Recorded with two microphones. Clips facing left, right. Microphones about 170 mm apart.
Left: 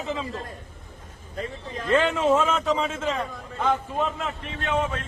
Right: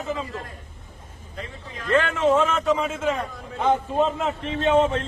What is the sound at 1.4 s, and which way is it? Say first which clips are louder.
Speech: left 4 dB; 40° left (ahead or behind).